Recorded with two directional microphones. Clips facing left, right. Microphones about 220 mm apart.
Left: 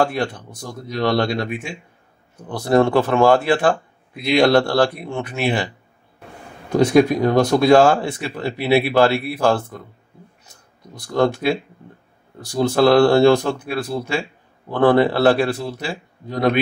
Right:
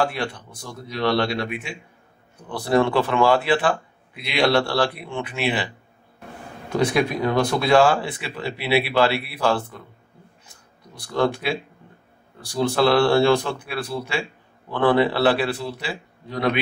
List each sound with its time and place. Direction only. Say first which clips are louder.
0.0 s speech: left 4 dB; 45° left (ahead or behind)
6.8 s speech: left 7 dB; 40° left (ahead or behind)
11.0 s speech: left 4 dB; 45° left (ahead or behind)